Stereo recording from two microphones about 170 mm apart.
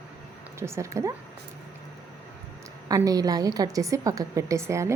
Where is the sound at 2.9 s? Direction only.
20° right (ahead or behind).